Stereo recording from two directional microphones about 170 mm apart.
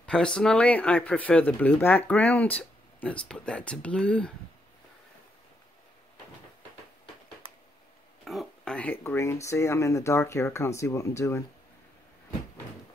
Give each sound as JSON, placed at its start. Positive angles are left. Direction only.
{"t": 0.0, "sound": "speech", "side_deg": 5}
{"t": 8.3, "sound": "speech", "side_deg": 0}